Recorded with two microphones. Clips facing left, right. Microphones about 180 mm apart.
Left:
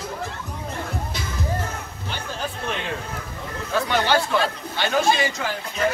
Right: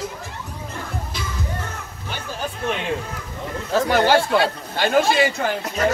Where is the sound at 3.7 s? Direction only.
45° right (ahead or behind).